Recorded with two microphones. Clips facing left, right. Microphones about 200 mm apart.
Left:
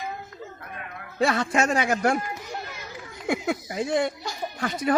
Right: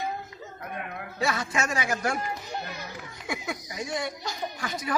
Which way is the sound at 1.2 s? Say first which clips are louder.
Left 6 dB; 55° left (ahead or behind).